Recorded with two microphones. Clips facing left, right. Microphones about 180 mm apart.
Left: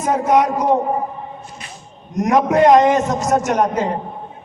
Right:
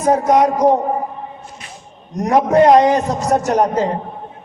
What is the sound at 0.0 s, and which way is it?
Speech, 40° right (ahead or behind).